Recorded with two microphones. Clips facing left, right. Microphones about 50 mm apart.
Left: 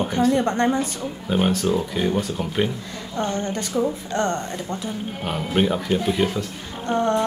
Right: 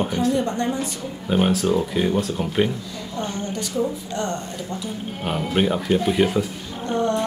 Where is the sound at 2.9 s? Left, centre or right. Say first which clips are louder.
Left 3 dB; left.